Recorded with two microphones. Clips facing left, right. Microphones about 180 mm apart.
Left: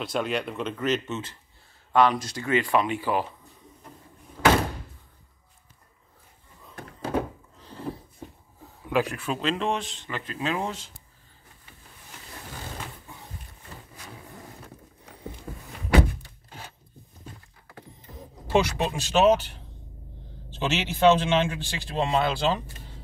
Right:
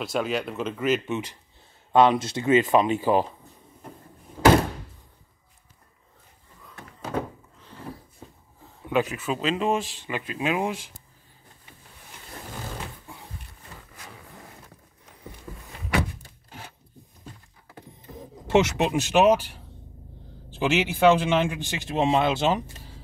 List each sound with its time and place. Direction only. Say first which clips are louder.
0.0 s speech: right 1 dB; centre (ahead or behind); by 3.3 s 25° right (ahead or behind)
4.4 s door: right 3 dB; 20° right (ahead or behind)
8.9 s speech: right 1 dB; 5° right (ahead or behind)
18.5 s speech: right 3 dB; 20° right (ahead or behind)